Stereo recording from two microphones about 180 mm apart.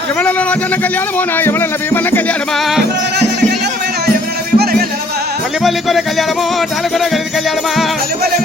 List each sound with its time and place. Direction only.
0.2 s speech: 5° left (ahead or behind)
1.4 s music: 10° left (ahead or behind)
4.5 s music: 60° right (ahead or behind)
5.6 s speech: centre (ahead or behind)